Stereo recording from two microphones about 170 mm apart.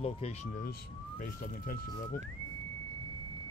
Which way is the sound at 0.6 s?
55° left (ahead or behind).